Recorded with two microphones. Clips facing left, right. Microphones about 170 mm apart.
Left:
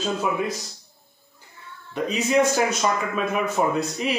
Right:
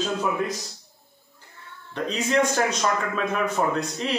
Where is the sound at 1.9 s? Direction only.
5° left (ahead or behind).